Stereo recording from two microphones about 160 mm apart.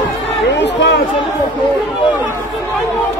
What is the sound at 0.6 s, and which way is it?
Speech, 90° left.